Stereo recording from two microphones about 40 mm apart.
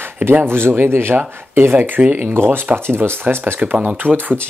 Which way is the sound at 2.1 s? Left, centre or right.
Right.